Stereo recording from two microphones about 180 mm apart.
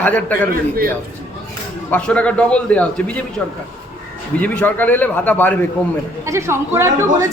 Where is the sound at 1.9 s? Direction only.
5° left (ahead or behind).